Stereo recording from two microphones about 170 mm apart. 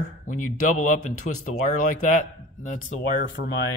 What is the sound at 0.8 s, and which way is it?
Speech, 50° left (ahead or behind).